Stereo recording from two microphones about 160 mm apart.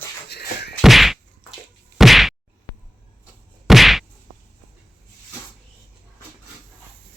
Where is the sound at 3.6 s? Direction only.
Centre (ahead or behind).